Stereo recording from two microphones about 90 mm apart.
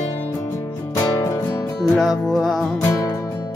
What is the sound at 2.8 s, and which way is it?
Music, 30° left (ahead or behind).